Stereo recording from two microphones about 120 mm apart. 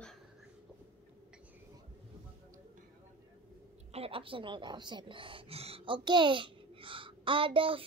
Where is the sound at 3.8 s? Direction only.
55° right (ahead or behind).